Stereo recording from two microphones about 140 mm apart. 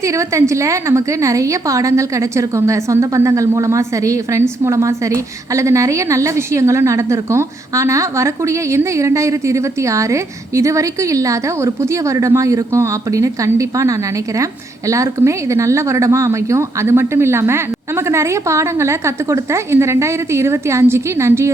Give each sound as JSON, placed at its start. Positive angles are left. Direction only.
{"t": 0.0, "sound": "a woman's voice", "side_deg": -20}